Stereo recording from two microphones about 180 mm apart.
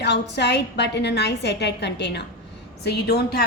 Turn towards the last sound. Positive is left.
turn(degrees=65)  # may be behind; listen again after turning